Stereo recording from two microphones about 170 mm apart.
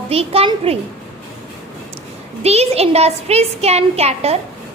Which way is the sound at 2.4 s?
40° right (ahead or behind).